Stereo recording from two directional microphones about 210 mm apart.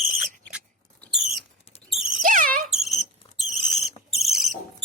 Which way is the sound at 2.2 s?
40° right (ahead or behind).